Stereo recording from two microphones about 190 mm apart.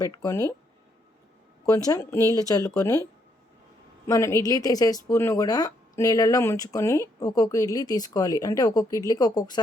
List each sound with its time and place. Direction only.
0.0 s speech: 20° left (ahead or behind)
1.9 s speech: 15° left (ahead or behind)
4.0 s a woman's voice: 15° left (ahead or behind)